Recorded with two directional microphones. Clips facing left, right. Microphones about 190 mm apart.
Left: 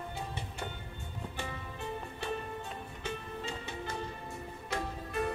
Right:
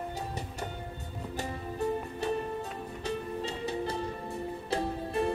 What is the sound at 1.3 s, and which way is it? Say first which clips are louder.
Music: right 9 dB; 40° right (ahead or behind).